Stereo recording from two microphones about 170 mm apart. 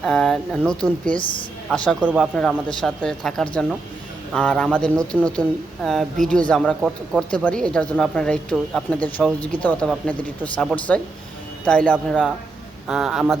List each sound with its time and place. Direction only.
0.0 s speech: 5° left (ahead or behind)
1.2 s a woman's voice: 30° left (ahead or behind)
1.7 s speech: 5° left (ahead or behind)
2.0 s speech: 5° right (ahead or behind)